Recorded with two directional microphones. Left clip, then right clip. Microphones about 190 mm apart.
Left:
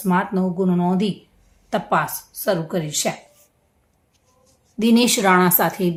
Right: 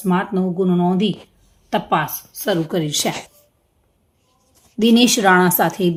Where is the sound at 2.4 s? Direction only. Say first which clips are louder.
Right 2 dB; 20° right (ahead or behind).